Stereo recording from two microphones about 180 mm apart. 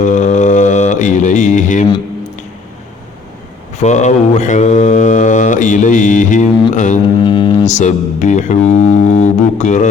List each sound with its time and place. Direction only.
0.0 s mantra: 45° left (ahead or behind)
3.8 s mantra: 40° left (ahead or behind)
7.3 s mantra: 25° left (ahead or behind)
7.7 s mantra: 40° left (ahead or behind)